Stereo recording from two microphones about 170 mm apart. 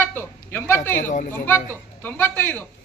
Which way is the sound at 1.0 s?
50° left (ahead or behind).